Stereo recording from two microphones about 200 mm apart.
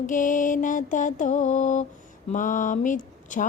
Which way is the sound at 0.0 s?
40° left (ahead or behind).